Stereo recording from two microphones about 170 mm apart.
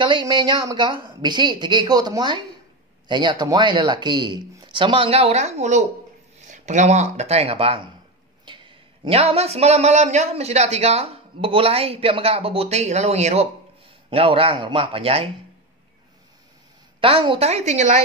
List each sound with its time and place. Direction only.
0.0 s speech: 25° right (ahead or behind)
17.0 s speech: 30° right (ahead or behind)